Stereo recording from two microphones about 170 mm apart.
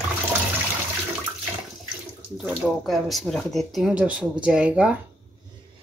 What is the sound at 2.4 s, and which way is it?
Speech, centre (ahead or behind).